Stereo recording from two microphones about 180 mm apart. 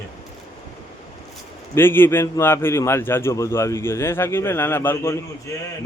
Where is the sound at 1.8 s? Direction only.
10° left (ahead or behind).